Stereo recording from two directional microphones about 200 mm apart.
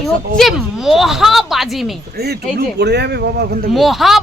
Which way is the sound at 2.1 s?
55° right (ahead or behind).